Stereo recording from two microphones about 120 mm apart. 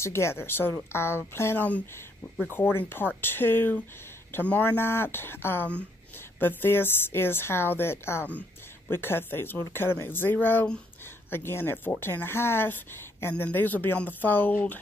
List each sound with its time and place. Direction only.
0.0 s a woman's voice: 20° left (ahead or behind)